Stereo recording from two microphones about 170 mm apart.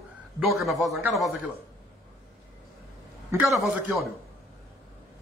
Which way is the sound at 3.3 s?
15° right (ahead or behind).